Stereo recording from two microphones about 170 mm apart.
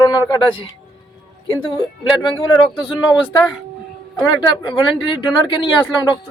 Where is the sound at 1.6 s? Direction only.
30° left (ahead or behind).